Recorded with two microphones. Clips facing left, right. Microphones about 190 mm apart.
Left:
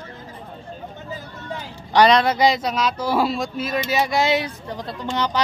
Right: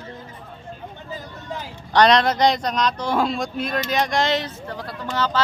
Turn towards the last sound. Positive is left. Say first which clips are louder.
# left 1 dB
turn(degrees=20)  # may be behind; listen again after turning